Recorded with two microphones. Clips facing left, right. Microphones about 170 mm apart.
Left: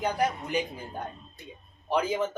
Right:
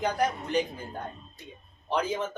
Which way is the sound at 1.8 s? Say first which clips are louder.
Left 2 dB; 10° left (ahead or behind).